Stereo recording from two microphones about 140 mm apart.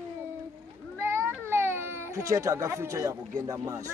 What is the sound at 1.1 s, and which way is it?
Speech, 20° right (ahead or behind).